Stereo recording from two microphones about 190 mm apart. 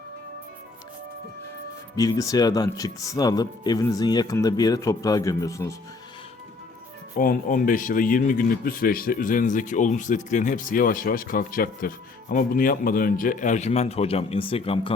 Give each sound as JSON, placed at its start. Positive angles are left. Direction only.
{"t": 2.0, "sound": "speech", "side_deg": 20}
{"t": 7.2, "sound": "speech", "side_deg": 45}